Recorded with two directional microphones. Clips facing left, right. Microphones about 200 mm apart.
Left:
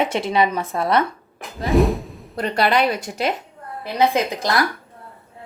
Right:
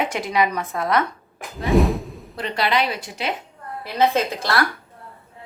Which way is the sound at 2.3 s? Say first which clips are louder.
Left 3 dB; 45° left (ahead or behind).